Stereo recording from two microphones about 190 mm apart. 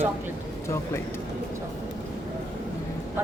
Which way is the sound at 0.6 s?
15° left (ahead or behind).